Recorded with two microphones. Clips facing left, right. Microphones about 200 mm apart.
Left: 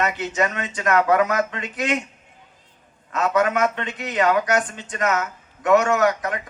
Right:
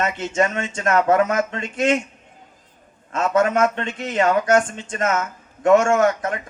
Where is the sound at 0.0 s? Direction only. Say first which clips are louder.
Right 2 dB; 25° right (ahead or behind).